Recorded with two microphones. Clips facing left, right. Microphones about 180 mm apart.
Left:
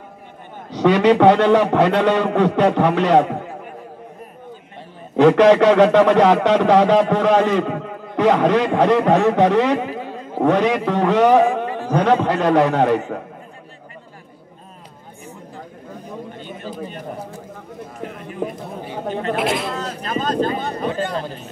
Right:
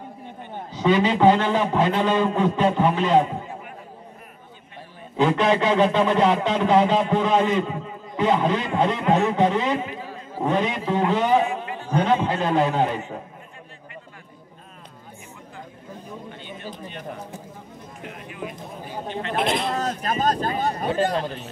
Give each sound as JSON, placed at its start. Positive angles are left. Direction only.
{"t": 0.7, "sound": "a man's voice", "side_deg": 70}
{"t": 5.1, "sound": "a man's voice", "side_deg": 75}
{"t": 16.3, "sound": "chatter", "side_deg": 45}
{"t": 19.3, "sound": "speech", "side_deg": 5}
{"t": 19.7, "sound": "vehicle", "side_deg": -40}
{"t": 20.4, "sound": "speech", "side_deg": -40}